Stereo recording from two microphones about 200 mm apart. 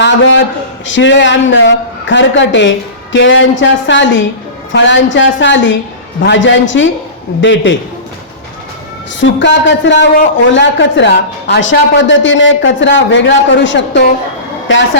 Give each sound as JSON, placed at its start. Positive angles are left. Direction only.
{"t": 0.0, "sound": "a man's voice", "side_deg": 65}
{"t": 9.2, "sound": "a man's voice", "side_deg": 65}